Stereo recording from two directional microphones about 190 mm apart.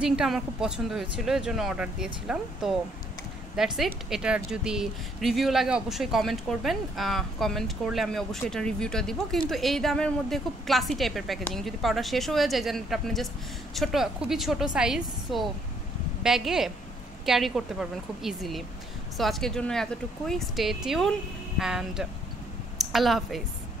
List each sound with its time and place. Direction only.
0.0 s speech: 5° right (ahead or behind)